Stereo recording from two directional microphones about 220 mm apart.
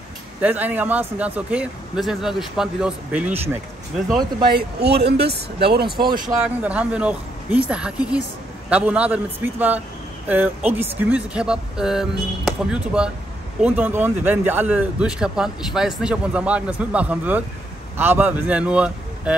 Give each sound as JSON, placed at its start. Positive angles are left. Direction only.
{"t": 0.4, "sound": "a man's voice", "side_deg": -5}
{"t": 4.5, "sound": "speech", "side_deg": -45}
{"t": 6.2, "sound": "a man's voice", "side_deg": -5}